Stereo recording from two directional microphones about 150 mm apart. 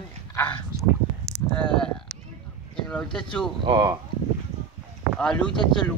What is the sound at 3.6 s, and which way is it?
Speech, 35° right (ahead or behind).